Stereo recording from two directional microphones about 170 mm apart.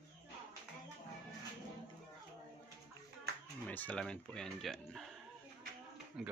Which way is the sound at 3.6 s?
10° left (ahead or behind).